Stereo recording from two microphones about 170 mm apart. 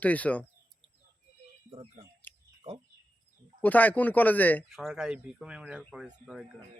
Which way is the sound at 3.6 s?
10° left (ahead or behind).